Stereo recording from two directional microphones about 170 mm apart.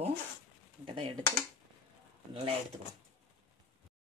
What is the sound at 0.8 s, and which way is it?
Speech, 30° right (ahead or behind).